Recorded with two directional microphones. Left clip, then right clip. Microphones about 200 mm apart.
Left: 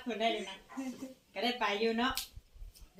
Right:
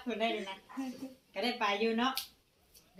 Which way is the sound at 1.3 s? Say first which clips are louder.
Even; 20° right (ahead or behind).